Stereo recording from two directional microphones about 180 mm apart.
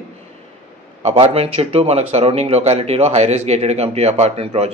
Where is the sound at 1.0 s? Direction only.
35° right (ahead or behind).